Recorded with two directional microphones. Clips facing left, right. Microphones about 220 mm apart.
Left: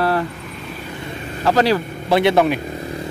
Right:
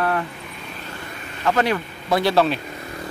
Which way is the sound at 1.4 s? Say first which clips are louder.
Left 4 dB; 35° left (ahead or behind).